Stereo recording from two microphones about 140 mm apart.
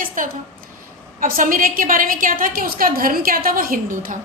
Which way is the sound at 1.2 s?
85° right.